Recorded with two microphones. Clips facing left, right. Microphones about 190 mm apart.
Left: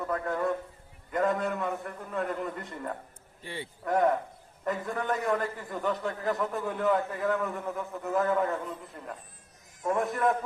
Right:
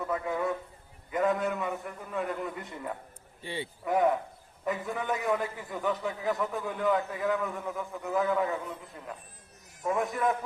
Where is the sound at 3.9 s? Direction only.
Centre (ahead or behind).